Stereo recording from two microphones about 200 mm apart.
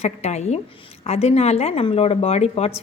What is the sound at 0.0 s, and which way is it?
Speech, 35° left (ahead or behind).